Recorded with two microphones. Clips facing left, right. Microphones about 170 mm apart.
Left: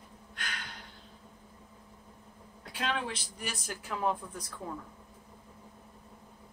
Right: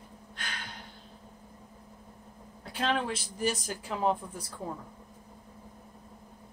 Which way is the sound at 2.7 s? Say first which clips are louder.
Right 4 dB; 35° right (ahead or behind).